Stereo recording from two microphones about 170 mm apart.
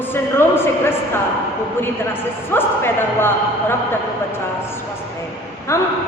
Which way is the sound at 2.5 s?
15° left (ahead or behind).